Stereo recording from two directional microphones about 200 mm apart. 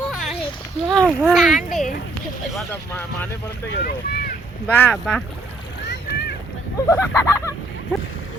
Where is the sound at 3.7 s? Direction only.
50° left (ahead or behind).